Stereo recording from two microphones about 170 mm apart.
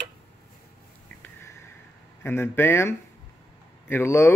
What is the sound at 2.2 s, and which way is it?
Speech, 15° left (ahead or behind).